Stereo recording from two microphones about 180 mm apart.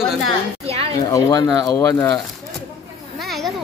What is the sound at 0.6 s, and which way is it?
Speech, 35° right (ahead or behind).